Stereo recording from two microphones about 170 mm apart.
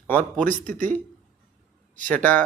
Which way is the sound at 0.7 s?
50° right (ahead or behind).